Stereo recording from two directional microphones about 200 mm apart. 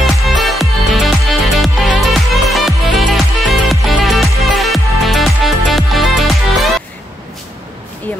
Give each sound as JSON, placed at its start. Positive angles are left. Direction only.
{"t": 0.0, "sound": "music", "side_deg": 0}